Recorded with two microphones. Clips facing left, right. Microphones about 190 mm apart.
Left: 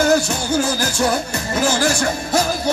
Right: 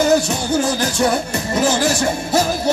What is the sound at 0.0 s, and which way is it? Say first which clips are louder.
Music: right 1 dB; centre (ahead or behind).